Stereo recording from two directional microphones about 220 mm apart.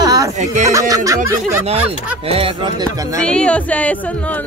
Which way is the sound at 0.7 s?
15° right (ahead or behind).